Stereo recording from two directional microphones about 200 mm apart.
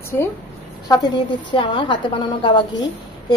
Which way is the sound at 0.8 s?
20° left (ahead or behind).